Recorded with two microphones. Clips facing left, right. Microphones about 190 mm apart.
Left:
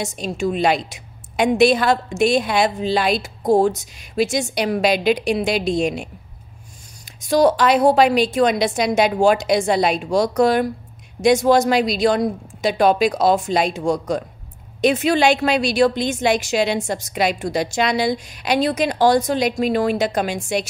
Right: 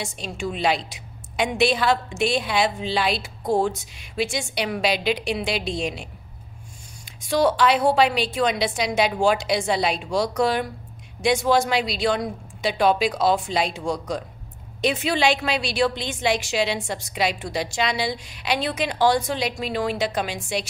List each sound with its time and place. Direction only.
0.0 s a woman's voice: 40° left (ahead or behind)
7.2 s a woman's voice: 40° left (ahead or behind)